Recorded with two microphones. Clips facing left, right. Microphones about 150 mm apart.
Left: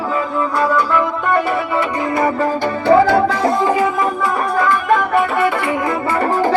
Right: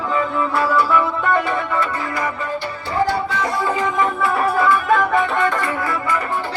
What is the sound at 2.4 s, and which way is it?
Music, 60° left (ahead or behind).